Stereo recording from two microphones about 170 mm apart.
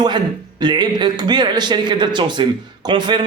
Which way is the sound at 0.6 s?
25° right (ahead or behind).